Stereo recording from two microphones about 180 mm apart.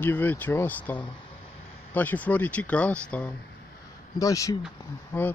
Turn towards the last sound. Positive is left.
turn(degrees=10)  # may be behind; listen again after turning